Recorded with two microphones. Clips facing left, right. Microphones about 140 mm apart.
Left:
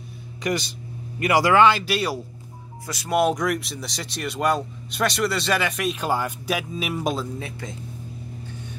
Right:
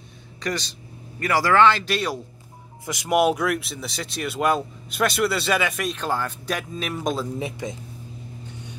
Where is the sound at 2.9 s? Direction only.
15° right (ahead or behind); by 5.9 s centre (ahead or behind).